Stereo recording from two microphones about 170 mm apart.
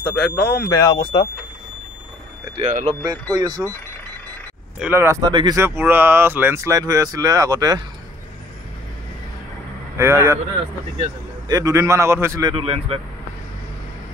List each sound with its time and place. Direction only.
0.0 s a sound: 5° left (ahead or behind)
0.7 s speech: 20° left (ahead or behind)
2.5 s speech: 40° right (ahead or behind)
3.3 s speech: 25° right (ahead or behind)
4.7 s speech: 10° right (ahead or behind)
5.6 s speech: 10° right (ahead or behind)
9.9 s speech: 15° right (ahead or behind); by 13.0 s 35° right (ahead or behind)